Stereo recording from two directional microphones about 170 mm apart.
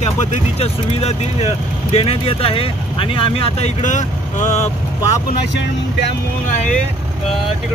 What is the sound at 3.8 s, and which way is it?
Speech, 45° left (ahead or behind).